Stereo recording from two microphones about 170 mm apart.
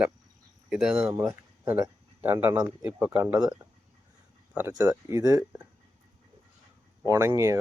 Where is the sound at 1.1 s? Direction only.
15° right (ahead or behind).